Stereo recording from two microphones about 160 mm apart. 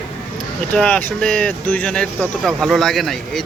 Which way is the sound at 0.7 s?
5° left (ahead or behind).